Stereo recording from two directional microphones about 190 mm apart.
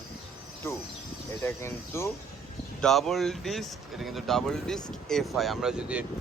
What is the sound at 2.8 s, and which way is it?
Speech, centre (ahead or behind).